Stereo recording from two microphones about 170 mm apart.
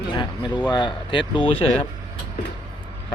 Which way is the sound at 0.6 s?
25° left (ahead or behind).